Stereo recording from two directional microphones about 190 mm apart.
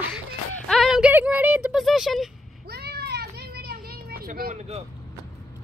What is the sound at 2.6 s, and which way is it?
Children playing, 55° right (ahead or behind).